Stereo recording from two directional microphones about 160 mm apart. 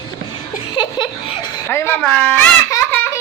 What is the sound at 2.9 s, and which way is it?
Laughter, 10° left (ahead or behind).